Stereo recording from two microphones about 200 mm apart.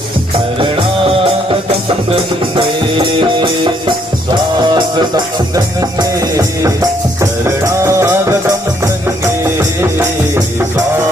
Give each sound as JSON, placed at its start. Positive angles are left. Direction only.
{"t": 1.1, "sound": "music", "side_deg": -30}
{"t": 2.6, "sound": "music", "side_deg": -25}